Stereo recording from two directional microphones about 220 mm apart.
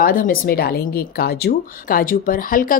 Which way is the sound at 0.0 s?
40° left (ahead or behind).